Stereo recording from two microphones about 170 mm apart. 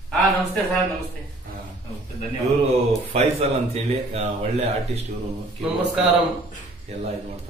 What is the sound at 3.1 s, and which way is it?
Speech, 35° right (ahead or behind).